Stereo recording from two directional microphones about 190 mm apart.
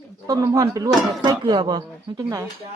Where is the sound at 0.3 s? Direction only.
20° right (ahead or behind).